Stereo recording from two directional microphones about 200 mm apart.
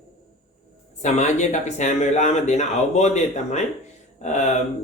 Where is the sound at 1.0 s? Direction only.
35° left (ahead or behind).